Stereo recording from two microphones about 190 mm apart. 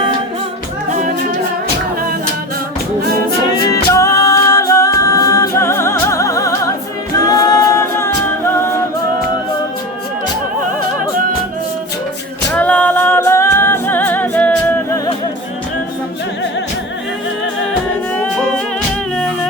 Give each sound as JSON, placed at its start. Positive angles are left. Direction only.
{"t": 3.7, "sound": "a capella", "side_deg": 15}
{"t": 12.5, "sound": "a capella", "side_deg": 5}
{"t": 18.1, "sound": "music", "side_deg": 5}